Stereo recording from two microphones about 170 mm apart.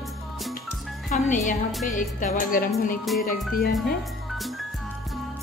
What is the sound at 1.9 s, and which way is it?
Music, 50° left (ahead or behind).